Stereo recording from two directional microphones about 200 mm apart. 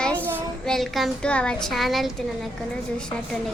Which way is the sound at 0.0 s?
5° left (ahead or behind).